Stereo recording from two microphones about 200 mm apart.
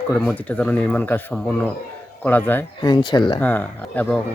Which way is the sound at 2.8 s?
20° left (ahead or behind).